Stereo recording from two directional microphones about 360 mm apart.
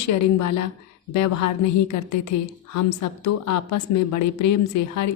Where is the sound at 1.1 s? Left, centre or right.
Left.